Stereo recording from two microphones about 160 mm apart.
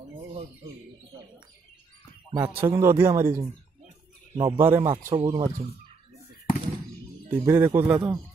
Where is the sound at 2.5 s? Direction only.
15° right (ahead or behind).